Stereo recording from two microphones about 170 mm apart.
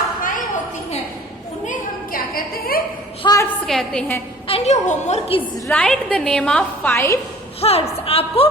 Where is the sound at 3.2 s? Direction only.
25° left (ahead or behind).